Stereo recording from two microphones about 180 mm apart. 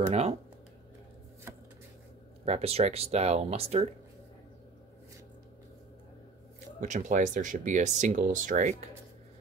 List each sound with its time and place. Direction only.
0.1 s speech: 35° right (ahead or behind)
1.5 s chopping: 15° right (ahead or behind)
2.4 s speech: 35° right (ahead or behind)
6.8 s speech: 45° right (ahead or behind)